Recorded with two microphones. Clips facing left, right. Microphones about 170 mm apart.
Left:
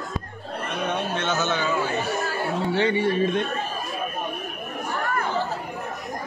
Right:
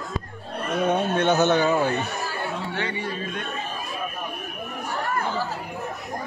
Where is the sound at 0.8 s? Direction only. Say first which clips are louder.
Right 6 dB; 55° right (ahead or behind).